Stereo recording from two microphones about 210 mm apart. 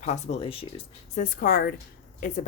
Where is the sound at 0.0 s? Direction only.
35° left (ahead or behind).